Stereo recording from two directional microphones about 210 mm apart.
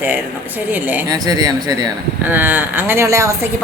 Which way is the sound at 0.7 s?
10° right (ahead or behind).